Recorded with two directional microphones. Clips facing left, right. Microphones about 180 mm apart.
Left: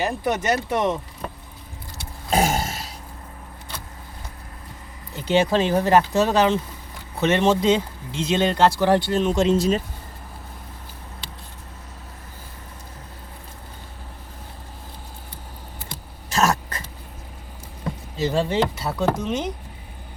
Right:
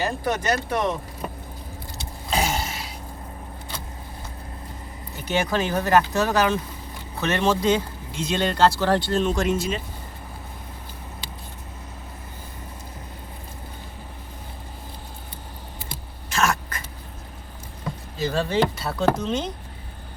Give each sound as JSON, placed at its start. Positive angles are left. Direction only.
{"t": 0.0, "sound": "speech", "side_deg": 20}
{"t": 2.3, "sound": "burping", "side_deg": 50}
{"t": 5.1, "sound": "speech", "side_deg": 25}
{"t": 9.4, "sound": "speech", "side_deg": 35}
{"t": 16.3, "sound": "a sound", "side_deg": 35}
{"t": 18.2, "sound": "speech", "side_deg": 20}